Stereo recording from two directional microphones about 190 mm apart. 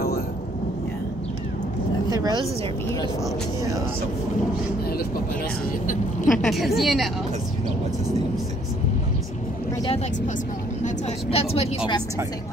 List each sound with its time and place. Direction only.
2.0 s a woman's voice: 20° right (ahead or behind)
6.2 s a woman's voice: centre (ahead or behind)
9.8 s a woman's voice: 35° left (ahead or behind)